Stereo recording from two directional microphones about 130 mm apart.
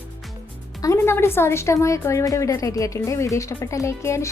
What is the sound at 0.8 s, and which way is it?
Speech, 20° left (ahead or behind).